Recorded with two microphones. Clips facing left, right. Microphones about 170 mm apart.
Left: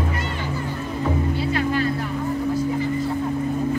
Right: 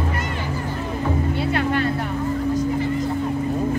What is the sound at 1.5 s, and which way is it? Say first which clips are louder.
Vehicle: right 1 dB; 60° right (ahead or behind).